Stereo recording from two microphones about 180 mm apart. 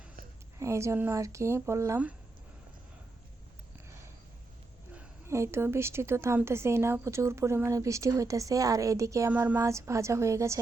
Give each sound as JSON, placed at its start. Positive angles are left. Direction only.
{"t": 0.6, "sound": "a woman's voice", "side_deg": -15}
{"t": 4.9, "sound": "a woman's voice", "side_deg": -15}